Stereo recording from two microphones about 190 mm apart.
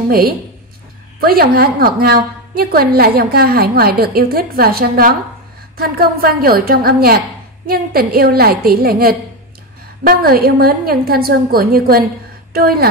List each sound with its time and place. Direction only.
0.1 s a woman's voice: 50° right (ahead or behind)